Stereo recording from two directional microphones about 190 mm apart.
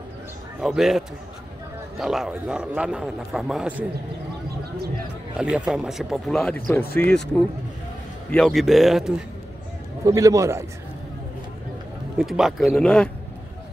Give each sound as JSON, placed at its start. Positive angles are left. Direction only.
{"t": 0.6, "sound": "speech", "side_deg": 0}
{"t": 5.4, "sound": "speech", "side_deg": -5}
{"t": 8.3, "sound": "speech", "side_deg": 0}
{"t": 10.0, "sound": "a man's voice", "side_deg": -15}
{"t": 12.2, "sound": "speech", "side_deg": 0}